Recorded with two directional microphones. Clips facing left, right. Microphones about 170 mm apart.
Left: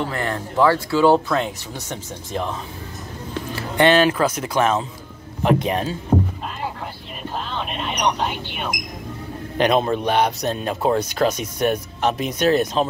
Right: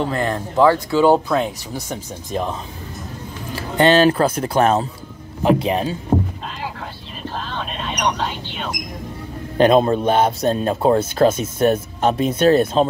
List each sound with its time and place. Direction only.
0.0 s speech: 20° right (ahead or behind)
3.8 s a man's voice: 30° right (ahead or behind)
7.3 s a sound: 10° left (ahead or behind)
9.6 s a man's voice: 35° right (ahead or behind)